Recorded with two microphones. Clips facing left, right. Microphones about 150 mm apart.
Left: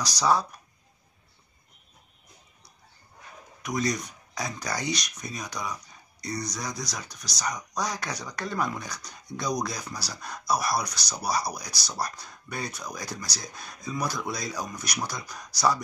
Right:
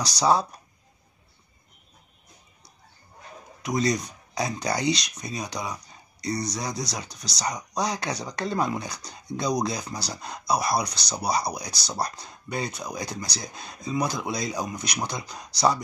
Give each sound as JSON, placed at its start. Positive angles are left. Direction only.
{"t": 0.2, "sound": "speech", "side_deg": -25}
{"t": 3.6, "sound": "speech", "side_deg": -30}